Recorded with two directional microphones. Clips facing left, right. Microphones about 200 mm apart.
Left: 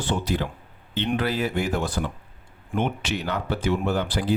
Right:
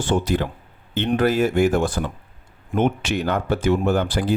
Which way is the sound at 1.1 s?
45° right (ahead or behind).